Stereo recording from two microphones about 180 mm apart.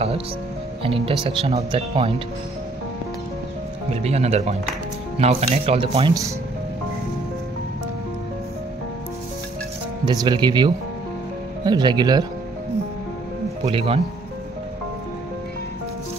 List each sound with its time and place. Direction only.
0.8 s speech: 30° right (ahead or behind)
3.9 s speech: 35° right (ahead or behind)
10.0 s speech: 25° right (ahead or behind)
13.7 s speech: 35° right (ahead or behind)